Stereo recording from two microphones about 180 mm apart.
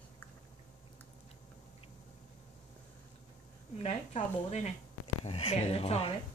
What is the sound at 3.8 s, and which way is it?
A woman's voice, 40° left (ahead or behind).